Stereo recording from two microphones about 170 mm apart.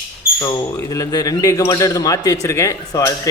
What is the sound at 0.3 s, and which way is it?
Speech, 20° left (ahead or behind).